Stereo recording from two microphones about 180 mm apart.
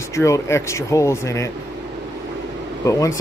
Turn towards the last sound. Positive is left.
turn(degrees=15)  # may be behind; listen again after turning